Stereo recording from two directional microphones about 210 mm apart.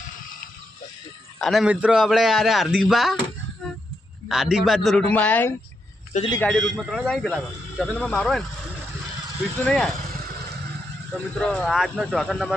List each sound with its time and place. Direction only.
1.4 s a man's voice: centre (ahead or behind)
4.3 s a man's voice: centre (ahead or behind)
6.1 s a man's voice: 25° left (ahead or behind)
6.4 s a man's voice: 5° left (ahead or behind)
9.6 s a man's voice: 5° left (ahead or behind)
11.3 s a man's voice: 5° left (ahead or behind)